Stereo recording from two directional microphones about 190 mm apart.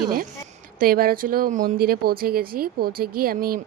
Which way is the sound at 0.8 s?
50° right (ahead or behind).